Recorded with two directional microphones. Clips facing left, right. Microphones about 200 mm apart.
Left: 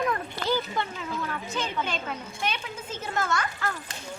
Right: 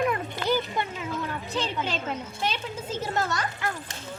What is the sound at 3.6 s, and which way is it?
Speech, 15° right (ahead or behind).